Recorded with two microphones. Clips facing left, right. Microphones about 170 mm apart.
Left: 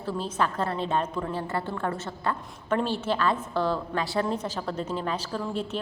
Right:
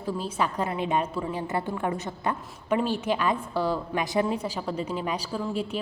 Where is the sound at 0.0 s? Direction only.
10° right (ahead or behind).